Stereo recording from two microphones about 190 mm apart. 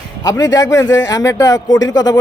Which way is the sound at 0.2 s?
20° left (ahead or behind).